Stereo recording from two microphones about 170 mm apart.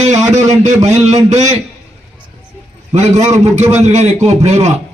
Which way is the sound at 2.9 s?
40° right (ahead or behind).